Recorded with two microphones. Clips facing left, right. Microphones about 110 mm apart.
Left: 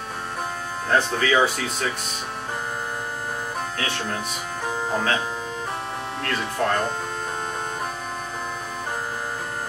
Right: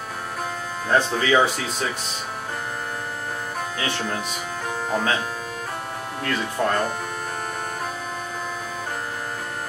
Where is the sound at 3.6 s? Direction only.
5° right (ahead or behind).